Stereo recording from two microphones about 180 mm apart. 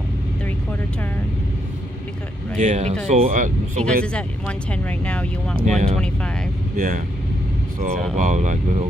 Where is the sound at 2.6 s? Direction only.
40° right (ahead or behind).